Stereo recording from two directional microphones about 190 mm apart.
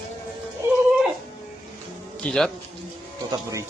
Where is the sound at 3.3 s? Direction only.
15° right (ahead or behind).